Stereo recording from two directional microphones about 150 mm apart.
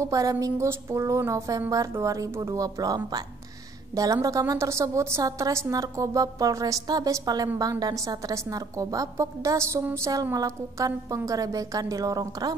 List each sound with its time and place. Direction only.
0.0 s a woman's voice: 25° right (ahead or behind)